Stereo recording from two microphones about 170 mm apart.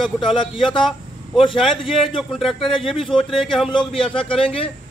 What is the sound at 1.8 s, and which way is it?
Speech, centre (ahead or behind).